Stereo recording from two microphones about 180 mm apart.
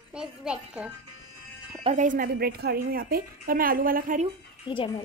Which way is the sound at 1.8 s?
45° right (ahead or behind).